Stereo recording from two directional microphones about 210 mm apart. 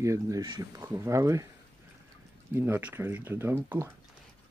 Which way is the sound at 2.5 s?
10° right (ahead or behind).